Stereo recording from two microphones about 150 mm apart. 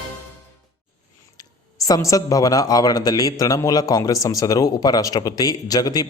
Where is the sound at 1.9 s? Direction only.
20° left (ahead or behind).